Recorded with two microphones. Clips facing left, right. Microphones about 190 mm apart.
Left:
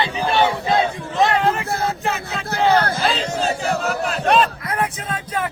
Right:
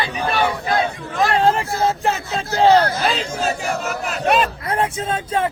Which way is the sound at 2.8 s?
55° left (ahead or behind).